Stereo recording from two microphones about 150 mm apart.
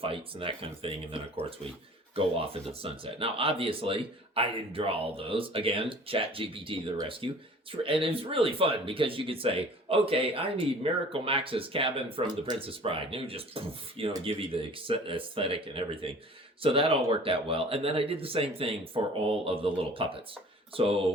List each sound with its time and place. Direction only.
0.0 s speech: 35° right (ahead or behind)